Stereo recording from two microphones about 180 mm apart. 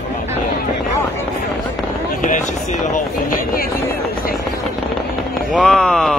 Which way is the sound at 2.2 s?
45° left (ahead or behind).